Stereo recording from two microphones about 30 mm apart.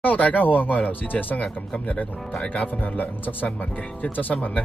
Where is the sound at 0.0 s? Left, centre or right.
Left.